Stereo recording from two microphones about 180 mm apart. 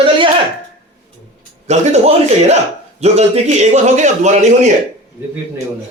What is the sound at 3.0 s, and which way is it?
A man's voice, 40° right (ahead or behind).